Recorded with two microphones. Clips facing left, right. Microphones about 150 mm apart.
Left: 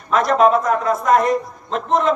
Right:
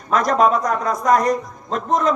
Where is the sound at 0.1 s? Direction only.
40° right (ahead or behind).